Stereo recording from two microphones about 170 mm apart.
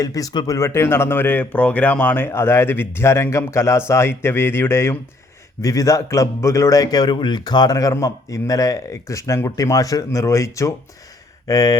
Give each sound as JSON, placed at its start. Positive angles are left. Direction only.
{"t": 0.0, "sound": "speech", "side_deg": 20}